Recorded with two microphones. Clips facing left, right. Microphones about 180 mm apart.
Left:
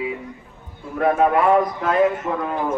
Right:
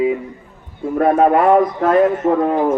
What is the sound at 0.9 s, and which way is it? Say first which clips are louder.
A man's voice: right 4 dB; 50° right (ahead or behind).